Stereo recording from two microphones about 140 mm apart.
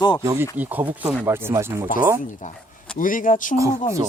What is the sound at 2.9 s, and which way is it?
Speech, 75° left (ahead or behind).